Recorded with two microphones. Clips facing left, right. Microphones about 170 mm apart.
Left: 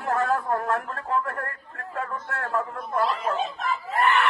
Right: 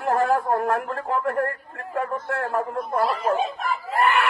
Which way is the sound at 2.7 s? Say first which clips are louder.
Right 3 dB; 40° right (ahead or behind).